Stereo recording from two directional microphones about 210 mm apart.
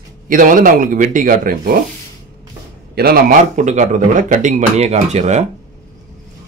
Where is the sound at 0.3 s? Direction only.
40° right (ahead or behind).